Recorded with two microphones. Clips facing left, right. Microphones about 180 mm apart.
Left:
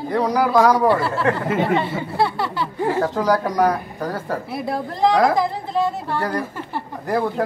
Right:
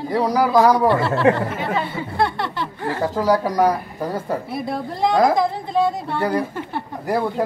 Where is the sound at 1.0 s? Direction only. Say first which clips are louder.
Right 4 dB; 25° right (ahead or behind).